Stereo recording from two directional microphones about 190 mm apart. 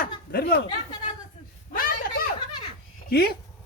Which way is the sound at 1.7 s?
50° left (ahead or behind).